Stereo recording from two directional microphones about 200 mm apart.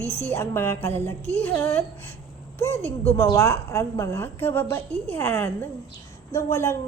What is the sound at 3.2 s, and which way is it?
A woman's voice, 15° left (ahead or behind).